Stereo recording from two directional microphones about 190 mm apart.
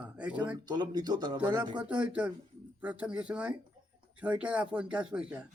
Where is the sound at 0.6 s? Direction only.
20° right (ahead or behind).